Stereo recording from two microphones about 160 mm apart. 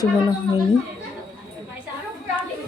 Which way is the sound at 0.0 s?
25° left (ahead or behind).